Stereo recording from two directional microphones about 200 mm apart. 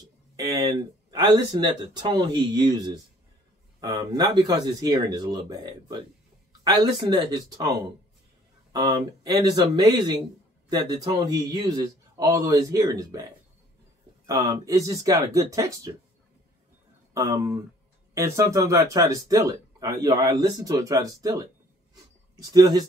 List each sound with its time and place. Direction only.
0.5 s speech: 20° right (ahead or behind)
14.2 s speech: 15° right (ahead or behind)
17.1 s speech: 15° right (ahead or behind)